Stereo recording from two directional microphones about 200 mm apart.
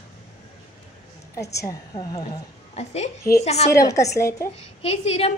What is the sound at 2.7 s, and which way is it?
Speech, 30° left (ahead or behind).